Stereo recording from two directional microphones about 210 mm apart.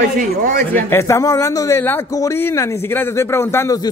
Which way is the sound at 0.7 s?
10° left (ahead or behind).